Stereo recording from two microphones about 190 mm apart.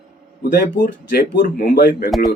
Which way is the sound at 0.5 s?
50° left (ahead or behind).